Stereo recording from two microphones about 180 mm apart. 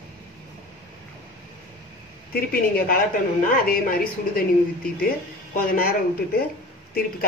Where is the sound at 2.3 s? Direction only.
55° left (ahead or behind).